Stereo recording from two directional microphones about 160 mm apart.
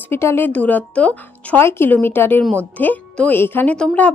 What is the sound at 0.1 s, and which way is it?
Speech, 15° left (ahead or behind).